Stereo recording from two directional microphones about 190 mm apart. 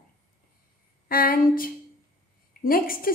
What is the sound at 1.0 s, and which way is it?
Speech, 50° left (ahead or behind).